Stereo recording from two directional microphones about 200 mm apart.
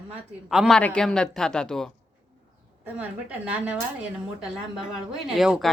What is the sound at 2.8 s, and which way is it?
Speech, 5° right (ahead or behind).